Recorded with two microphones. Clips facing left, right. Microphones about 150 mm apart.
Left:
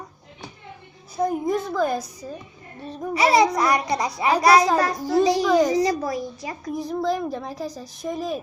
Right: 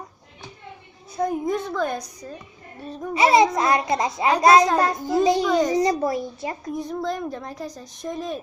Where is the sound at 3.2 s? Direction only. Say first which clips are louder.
Right 1 dB; 25° right (ahead or behind).